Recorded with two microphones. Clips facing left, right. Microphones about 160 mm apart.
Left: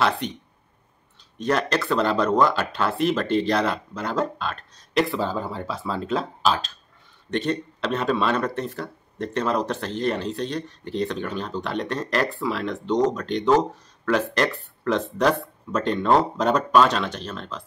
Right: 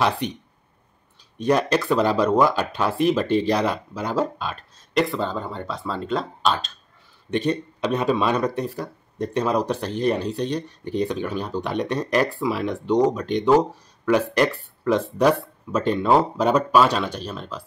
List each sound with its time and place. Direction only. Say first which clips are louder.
1.4 s speech: right 3 dB; 10° right (ahead or behind)
7.2 s speech: right 2 dB; 10° right (ahead or behind)